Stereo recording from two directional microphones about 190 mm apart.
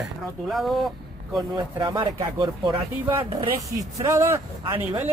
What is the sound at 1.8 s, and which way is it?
Speech, 25° right (ahead or behind).